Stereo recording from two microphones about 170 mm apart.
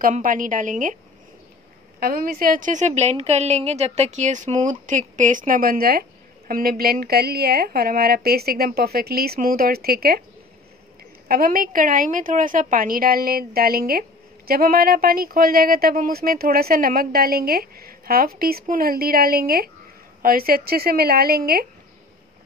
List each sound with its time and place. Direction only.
0.0 s a woman's voice: 55° right (ahead or behind)
2.0 s a woman's voice: 60° right (ahead or behind)
11.2 s a woman's voice: 60° right (ahead or behind)